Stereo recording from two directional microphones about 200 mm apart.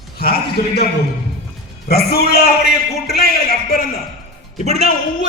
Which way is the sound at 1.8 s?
50° left (ahead or behind).